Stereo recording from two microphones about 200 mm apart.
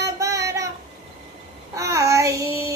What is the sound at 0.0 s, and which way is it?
Child singing, 15° right (ahead or behind).